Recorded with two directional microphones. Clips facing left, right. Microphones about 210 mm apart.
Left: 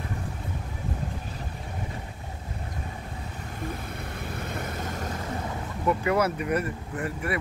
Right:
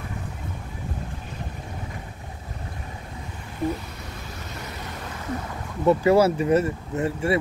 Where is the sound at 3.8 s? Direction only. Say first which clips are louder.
Left 3 dB; 55° left (ahead or behind).